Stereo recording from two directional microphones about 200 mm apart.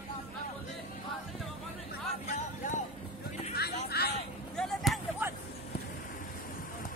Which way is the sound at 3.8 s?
50° left (ahead or behind).